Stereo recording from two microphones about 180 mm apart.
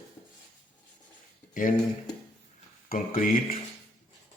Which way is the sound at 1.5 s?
45° left (ahead or behind).